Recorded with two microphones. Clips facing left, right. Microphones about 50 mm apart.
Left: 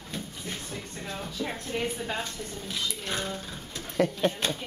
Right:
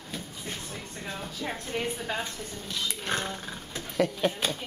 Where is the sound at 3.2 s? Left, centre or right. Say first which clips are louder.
Even; centre.